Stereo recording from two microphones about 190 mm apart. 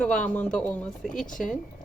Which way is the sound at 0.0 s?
5° left (ahead or behind).